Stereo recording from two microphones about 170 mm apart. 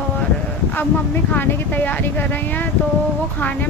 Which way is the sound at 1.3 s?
10° left (ahead or behind).